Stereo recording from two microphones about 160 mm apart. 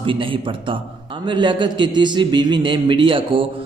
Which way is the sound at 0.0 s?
35° right (ahead or behind).